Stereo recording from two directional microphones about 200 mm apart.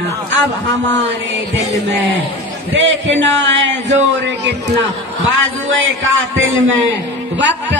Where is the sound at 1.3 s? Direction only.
60° right (ahead or behind).